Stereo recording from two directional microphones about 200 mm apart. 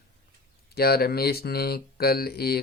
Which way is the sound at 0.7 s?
50° left (ahead or behind).